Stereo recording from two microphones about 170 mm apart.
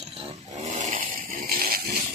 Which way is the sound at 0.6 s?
45° right (ahead or behind).